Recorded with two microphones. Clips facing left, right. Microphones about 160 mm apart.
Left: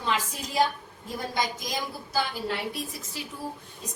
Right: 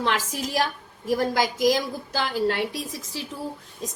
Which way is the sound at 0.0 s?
85° right.